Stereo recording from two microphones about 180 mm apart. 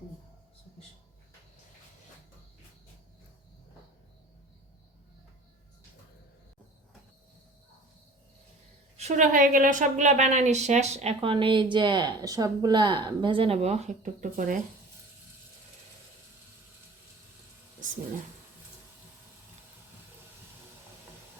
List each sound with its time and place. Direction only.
9.0 s a woman's voice: 40° right (ahead or behind)